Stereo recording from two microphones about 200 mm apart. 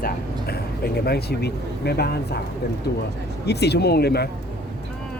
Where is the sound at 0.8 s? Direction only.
50° left (ahead or behind).